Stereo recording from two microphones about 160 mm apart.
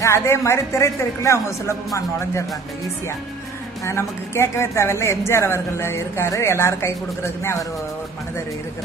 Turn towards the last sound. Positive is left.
turn(degrees=15)  # may be behind; listen again after turning